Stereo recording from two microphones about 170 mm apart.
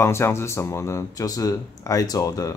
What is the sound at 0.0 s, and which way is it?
Speech, 15° left (ahead or behind).